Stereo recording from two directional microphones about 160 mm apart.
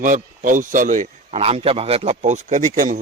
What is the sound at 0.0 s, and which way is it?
A man's voice, 55° right (ahead or behind).